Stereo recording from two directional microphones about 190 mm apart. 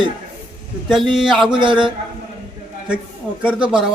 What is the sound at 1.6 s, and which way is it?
Speech, 25° right (ahead or behind).